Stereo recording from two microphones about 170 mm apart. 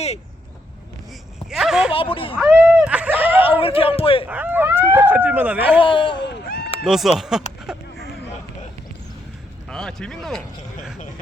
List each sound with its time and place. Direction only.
1.5 s a sound: 5° right (ahead or behind)
1.9 s speech: 35° left (ahead or behind)
2.4 s a sound: 5° right (ahead or behind)
3.2 s speech: 35° left (ahead or behind)
4.3 s speech: 10° right (ahead or behind)
5.8 s speech: 30° left (ahead or behind)
6.2 s run: 65° left (ahead or behind)
6.8 s speech: centre (ahead or behind)
7.7 s a sound: 5° right (ahead or behind)
9.6 s speech: 5° left (ahead or behind)